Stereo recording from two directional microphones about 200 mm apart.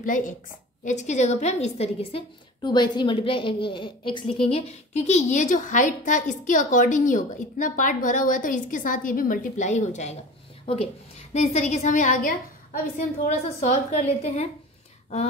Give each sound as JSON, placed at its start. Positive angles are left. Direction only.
{"t": 0.0, "sound": "a woman's voice", "side_deg": 45}